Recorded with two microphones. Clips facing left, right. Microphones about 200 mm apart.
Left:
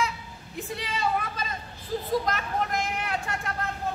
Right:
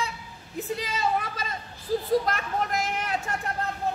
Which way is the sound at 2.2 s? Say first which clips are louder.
Even; 45° right (ahead or behind).